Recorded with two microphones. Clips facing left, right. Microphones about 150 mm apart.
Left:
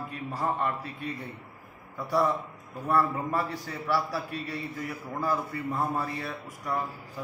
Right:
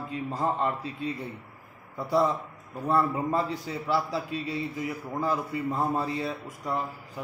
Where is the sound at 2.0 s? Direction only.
25° right (ahead or behind).